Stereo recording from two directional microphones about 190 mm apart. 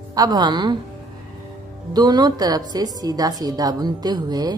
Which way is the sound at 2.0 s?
20° right (ahead or behind).